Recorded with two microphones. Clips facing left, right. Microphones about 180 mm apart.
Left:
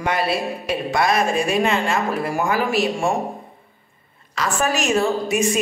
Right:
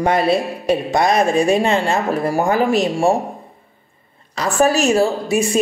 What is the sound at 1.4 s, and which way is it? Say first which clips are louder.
A woman's voice: right 4 dB; 35° right (ahead or behind).